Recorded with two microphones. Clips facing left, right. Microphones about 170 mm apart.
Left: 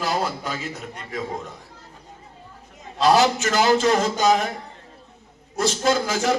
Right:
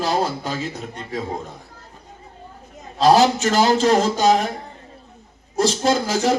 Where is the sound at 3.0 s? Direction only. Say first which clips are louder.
Right 3 dB; 35° right (ahead or behind).